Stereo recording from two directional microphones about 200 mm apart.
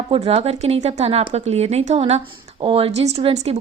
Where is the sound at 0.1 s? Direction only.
30° right (ahead or behind).